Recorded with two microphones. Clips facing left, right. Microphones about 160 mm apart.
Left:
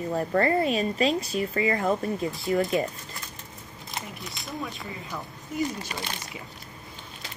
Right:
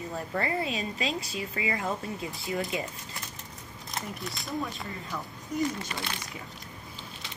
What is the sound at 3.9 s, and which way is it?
Speech, centre (ahead or behind).